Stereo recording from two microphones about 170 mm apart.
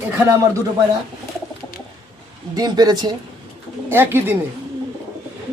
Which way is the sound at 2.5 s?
20° right (ahead or behind).